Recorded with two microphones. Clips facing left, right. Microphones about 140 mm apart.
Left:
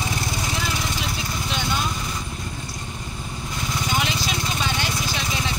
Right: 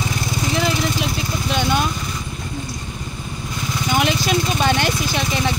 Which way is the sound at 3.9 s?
55° right (ahead or behind).